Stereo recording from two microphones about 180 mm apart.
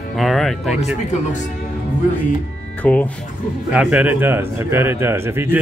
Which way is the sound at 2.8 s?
10° left (ahead or behind).